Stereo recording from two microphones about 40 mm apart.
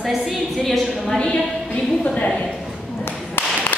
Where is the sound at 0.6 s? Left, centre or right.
Centre.